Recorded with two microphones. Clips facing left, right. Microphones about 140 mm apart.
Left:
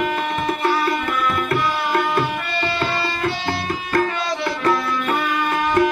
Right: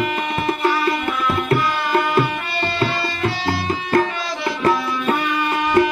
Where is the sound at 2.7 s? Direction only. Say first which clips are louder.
Right 1 dB; centre (ahead or behind).